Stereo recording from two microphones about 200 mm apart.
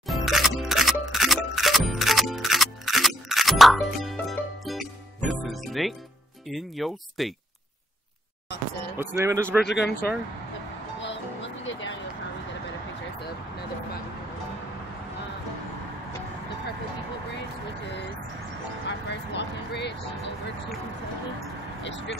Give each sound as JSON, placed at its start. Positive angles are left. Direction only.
{"t": 0.0, "sound": "music", "side_deg": 0}
{"t": 6.5, "sound": "speech", "side_deg": 0}
{"t": 8.9, "sound": "speech", "side_deg": -10}
{"t": 9.7, "sound": "speech", "side_deg": 55}
{"t": 11.0, "sound": "music", "side_deg": 65}
{"t": 18.9, "sound": "a sound", "side_deg": 60}
{"t": 21.8, "sound": "speech", "side_deg": 65}